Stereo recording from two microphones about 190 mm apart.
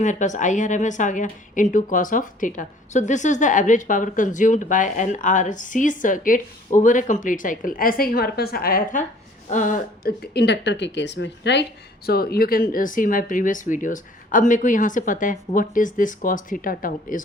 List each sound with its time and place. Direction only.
0.0 s a woman's voice: 40° left (ahead or behind); by 11.6 s 65° left (ahead or behind)
12.0 s speech: 55° left (ahead or behind)